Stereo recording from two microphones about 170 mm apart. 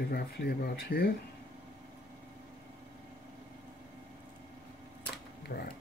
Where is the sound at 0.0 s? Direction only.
70° left (ahead or behind).